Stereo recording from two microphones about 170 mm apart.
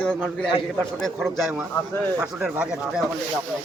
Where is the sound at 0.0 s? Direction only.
5° left (ahead or behind).